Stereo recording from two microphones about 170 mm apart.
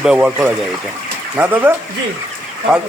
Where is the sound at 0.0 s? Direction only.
5° right (ahead or behind).